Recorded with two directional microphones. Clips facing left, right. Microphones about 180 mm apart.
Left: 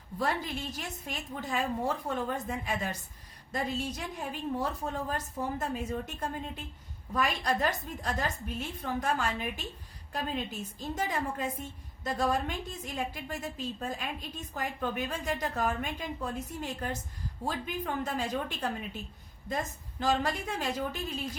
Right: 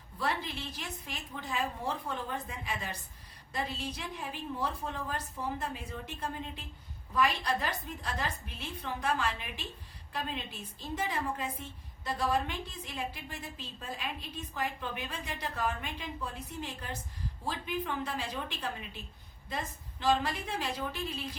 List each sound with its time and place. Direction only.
0.2 s a woman's voice: 45° left (ahead or behind)
20.0 s a woman's voice: 45° left (ahead or behind)